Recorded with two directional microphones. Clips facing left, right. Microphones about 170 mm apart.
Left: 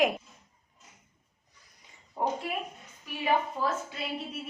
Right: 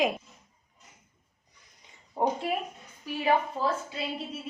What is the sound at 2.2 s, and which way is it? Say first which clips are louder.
Speech: right 3 dB; 30° right (ahead or behind).